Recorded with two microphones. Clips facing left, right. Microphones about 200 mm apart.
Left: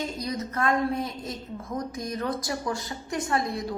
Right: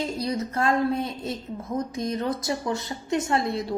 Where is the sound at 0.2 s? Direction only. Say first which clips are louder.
Right 3 dB; 30° right (ahead or behind).